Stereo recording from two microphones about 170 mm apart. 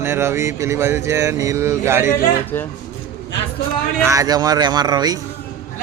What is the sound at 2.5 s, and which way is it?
Speech, 10° left (ahead or behind).